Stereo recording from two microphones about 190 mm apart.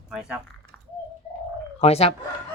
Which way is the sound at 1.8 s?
30° left (ahead or behind).